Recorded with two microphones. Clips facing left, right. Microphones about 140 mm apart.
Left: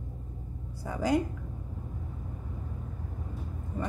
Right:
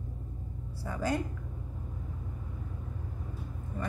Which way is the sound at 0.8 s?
15° left (ahead or behind).